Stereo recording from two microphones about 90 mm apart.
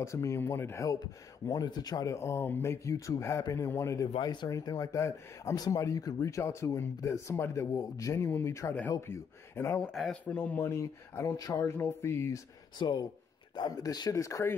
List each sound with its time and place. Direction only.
0.0 s speech: 35° left (ahead or behind)
1.5 s speech: 45° left (ahead or behind)
2.0 s speech: 30° left (ahead or behind)
4.2 s speech: 50° left (ahead or behind); by 12.4 s 30° left (ahead or behind)
12.7 s speech: 50° left (ahead or behind)
14.1 s speech: 35° left (ahead or behind)